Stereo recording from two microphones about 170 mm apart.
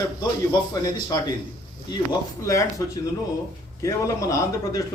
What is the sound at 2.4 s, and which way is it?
A man's voice, 20° left (ahead or behind).